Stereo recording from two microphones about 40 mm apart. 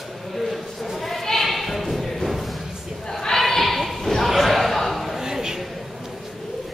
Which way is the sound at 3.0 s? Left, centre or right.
Centre.